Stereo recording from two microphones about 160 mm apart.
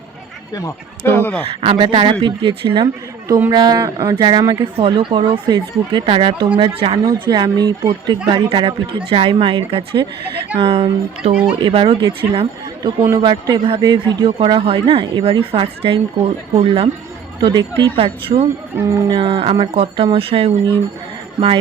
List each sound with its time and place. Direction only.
1.0 s speech: 15° left (ahead or behind)
1.5 s a man's voice: 35° right (ahead or behind)
17.9 s a man's voice: 35° right (ahead or behind)
18.9 s speech: 20° right (ahead or behind)
19.1 s a man's voice: 35° right (ahead or behind)